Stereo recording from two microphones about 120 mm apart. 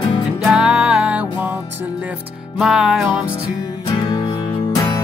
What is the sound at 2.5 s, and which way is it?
Music, centre (ahead or behind).